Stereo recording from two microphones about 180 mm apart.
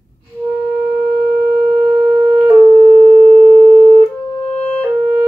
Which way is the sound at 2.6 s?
30° left (ahead or behind).